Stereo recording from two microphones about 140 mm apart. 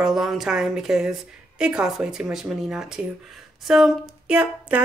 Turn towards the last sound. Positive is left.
turn(degrees=-10)  # may be behind; listen again after turning